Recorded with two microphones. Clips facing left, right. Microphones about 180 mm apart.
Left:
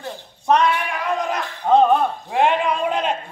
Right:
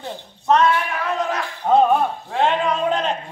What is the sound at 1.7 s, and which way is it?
Speech, 5° right (ahead or behind).